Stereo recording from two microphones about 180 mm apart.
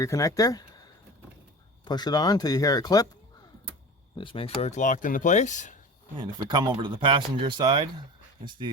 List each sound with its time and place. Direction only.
0.0 s speech: 20° left (ahead or behind)
1.8 s speech: 25° left (ahead or behind)
4.2 s speech: 30° left (ahead or behind)
6.1 s speech: 25° right (ahead or behind)